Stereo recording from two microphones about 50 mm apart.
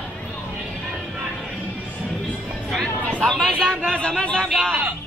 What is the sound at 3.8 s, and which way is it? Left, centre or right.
Speech, centre.